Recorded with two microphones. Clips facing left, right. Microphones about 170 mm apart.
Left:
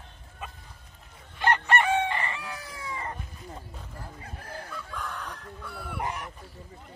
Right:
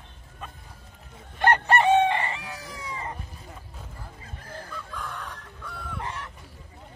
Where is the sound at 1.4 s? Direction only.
50° right (ahead or behind).